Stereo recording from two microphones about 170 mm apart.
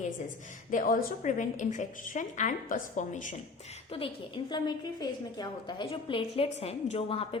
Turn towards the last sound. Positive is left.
turn(degrees=35)  # may be behind; listen again after turning